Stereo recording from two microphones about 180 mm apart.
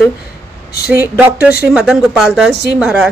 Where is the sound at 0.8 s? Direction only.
10° right (ahead or behind).